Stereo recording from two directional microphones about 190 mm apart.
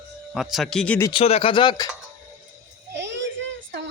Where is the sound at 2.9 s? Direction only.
70° right (ahead or behind).